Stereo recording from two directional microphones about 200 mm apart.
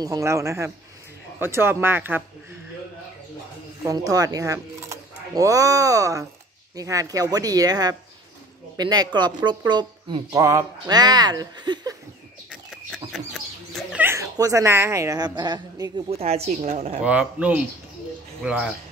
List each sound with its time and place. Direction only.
0.0 s speech: 15° right (ahead or behind)
3.8 s a woman's voice: 20° right (ahead or behind)
12.9 s chicken: centre (ahead or behind)
14.0 s a woman's voice: 15° right (ahead or behind); by 17.0 s 35° right (ahead or behind)
17.0 s speech: 5° right (ahead or behind)